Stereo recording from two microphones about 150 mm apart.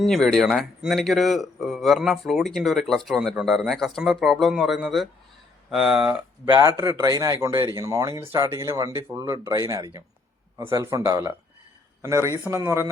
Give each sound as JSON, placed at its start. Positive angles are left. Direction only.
{"t": 0.0, "sound": "speech", "side_deg": 0}
{"t": 6.7, "sound": "speech", "side_deg": -25}